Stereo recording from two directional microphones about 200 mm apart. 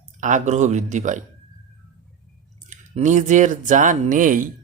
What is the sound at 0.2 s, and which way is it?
Speech, 35° right (ahead or behind).